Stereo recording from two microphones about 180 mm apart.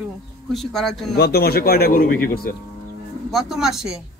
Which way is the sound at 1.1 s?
60° left (ahead or behind).